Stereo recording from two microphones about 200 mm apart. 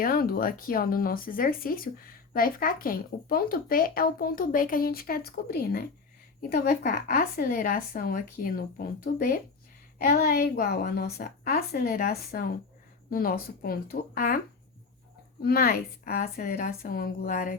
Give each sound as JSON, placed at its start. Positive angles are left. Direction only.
{"t": 0.0, "sound": "speech", "side_deg": 45}